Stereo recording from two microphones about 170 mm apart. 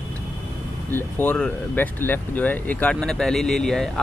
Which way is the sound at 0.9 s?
10° left (ahead or behind).